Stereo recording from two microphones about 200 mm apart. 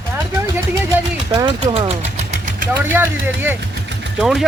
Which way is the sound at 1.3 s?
25° right (ahead or behind).